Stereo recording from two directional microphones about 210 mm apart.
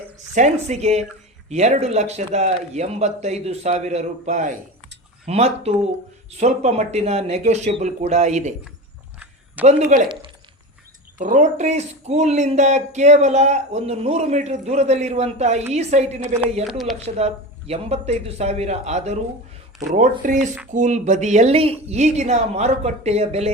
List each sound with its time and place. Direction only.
0.3 s speech: 35° right (ahead or behind)
9.6 s speech: 40° right (ahead or behind)
11.2 s speech: 35° right (ahead or behind)
16.6 s speech: centre (ahead or behind)
17.2 s speech: 30° right (ahead or behind)